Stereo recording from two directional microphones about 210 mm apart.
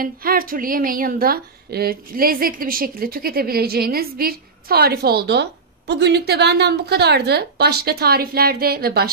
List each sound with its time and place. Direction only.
0.0 s a woman's voice: 45° right (ahead or behind)